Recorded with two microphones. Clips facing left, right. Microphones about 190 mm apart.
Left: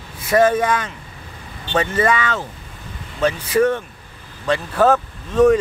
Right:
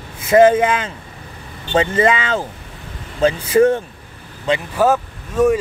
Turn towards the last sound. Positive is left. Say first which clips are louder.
# left 2 dB
turn(degrees=-10)  # may be behind; listen again after turning